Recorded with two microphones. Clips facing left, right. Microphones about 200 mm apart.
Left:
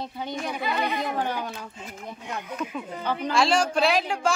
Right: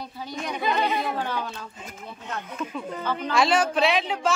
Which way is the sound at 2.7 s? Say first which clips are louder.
Right 2 dB; 10° left (ahead or behind).